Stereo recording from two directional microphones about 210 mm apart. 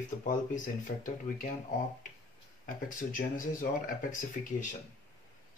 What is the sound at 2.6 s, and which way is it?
Speech, 40° left (ahead or behind).